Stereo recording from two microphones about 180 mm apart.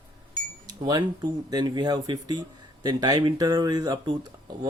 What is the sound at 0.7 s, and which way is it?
Speech, 20° right (ahead or behind).